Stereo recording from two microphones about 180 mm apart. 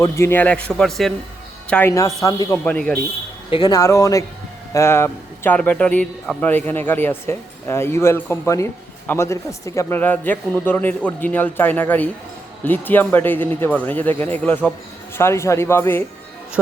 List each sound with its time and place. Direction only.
0.0 s a man's voice: 15° left (ahead or behind)
1.7 s a man's voice: 15° left (ahead or behind)
2.6 s a man's voice: 10° left (ahead or behind)
3.5 s a man's voice: 20° left (ahead or behind)